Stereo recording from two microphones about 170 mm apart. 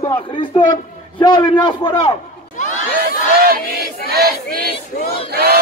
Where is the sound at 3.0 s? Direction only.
60° right (ahead or behind).